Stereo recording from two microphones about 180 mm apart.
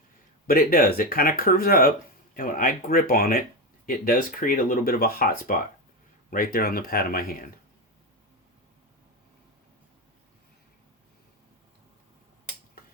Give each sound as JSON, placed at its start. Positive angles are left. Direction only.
{"t": 0.4, "sound": "speech", "side_deg": 55}